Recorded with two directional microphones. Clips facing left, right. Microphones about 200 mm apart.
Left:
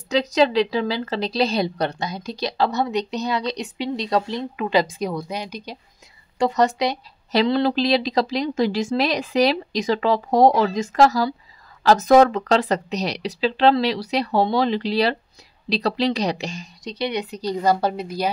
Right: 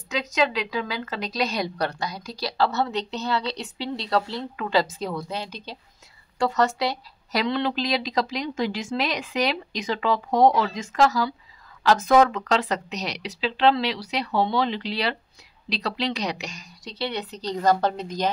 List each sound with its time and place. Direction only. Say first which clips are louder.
0.1 s a woman's voice: left 6 dB; 35° left (ahead or behind); by 7.4 s 20° left (ahead or behind)
7.4 s speech: left 5 dB; 35° left (ahead or behind)
16.8 s a woman's voice: left 4 dB; 15° left (ahead or behind)